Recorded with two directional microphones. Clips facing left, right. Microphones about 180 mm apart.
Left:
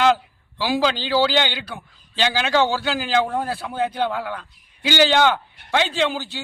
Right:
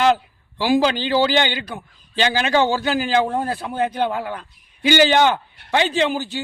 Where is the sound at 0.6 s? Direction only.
50° right (ahead or behind).